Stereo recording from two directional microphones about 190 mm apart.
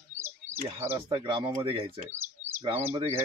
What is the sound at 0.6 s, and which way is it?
Speech, 15° right (ahead or behind).